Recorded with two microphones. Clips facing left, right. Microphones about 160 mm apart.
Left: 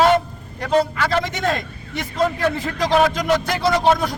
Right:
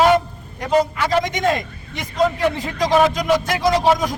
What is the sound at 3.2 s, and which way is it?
Speech, 10° right (ahead or behind).